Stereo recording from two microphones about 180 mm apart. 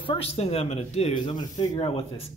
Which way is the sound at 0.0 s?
30° left (ahead or behind).